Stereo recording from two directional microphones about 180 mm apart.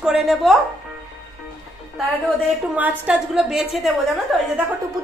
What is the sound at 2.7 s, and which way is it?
A woman's voice, 10° right (ahead or behind).